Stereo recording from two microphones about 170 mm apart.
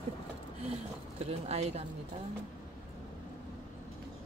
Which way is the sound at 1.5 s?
40° right (ahead or behind).